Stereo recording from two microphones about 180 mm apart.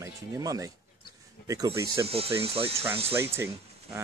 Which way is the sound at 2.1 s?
30° right (ahead or behind).